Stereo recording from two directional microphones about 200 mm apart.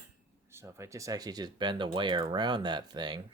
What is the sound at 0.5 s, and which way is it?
Speech, 15° right (ahead or behind).